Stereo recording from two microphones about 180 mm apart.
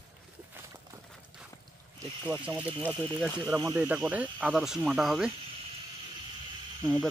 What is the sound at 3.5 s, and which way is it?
Speech, 20° right (ahead or behind).